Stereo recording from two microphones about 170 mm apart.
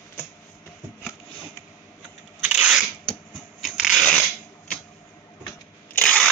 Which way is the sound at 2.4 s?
5° right (ahead or behind).